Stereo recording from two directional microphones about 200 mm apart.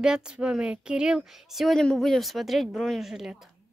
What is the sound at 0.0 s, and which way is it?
A woman's voice, 5° right (ahead or behind).